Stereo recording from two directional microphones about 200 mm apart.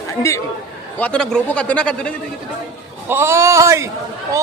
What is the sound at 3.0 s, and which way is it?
Speech, 10° right (ahead or behind).